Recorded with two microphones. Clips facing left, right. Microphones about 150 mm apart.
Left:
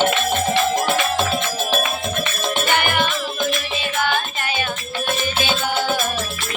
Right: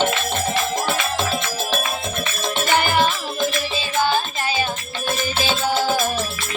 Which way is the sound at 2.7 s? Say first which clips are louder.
Right 2 dB; 35° right (ahead or behind).